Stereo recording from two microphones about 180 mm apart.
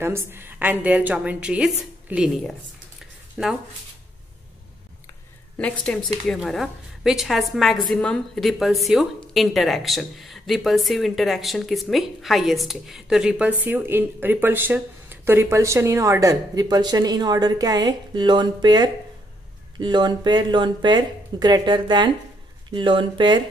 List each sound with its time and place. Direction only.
0.0 s a woman's voice: 15° right (ahead or behind)
5.6 s a woman's voice: 5° left (ahead or behind); by 23.4 s 25° right (ahead or behind)